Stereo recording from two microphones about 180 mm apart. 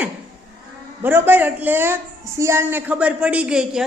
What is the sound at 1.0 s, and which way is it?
Speech, 10° right (ahead or behind).